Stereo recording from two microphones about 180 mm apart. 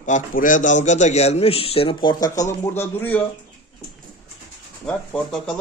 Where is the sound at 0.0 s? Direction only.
45° left (ahead or behind); by 3.3 s 10° left (ahead or behind).